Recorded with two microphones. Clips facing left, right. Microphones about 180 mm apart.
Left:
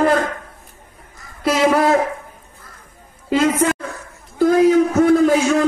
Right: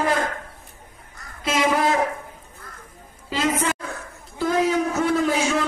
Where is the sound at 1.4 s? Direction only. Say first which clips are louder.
Left 6 dB; 50° left (ahead or behind).